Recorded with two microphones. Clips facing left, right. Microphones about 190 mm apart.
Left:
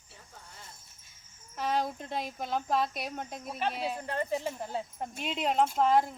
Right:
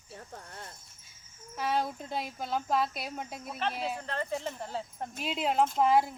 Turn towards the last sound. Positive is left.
turn(degrees=-10)  # may be behind; listen again after turning